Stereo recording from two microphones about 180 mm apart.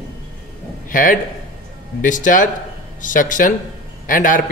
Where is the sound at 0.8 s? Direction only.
50° left (ahead or behind).